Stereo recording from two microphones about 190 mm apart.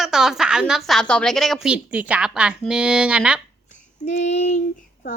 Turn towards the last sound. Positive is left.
turn(degrees=35)  # may be behind; listen again after turning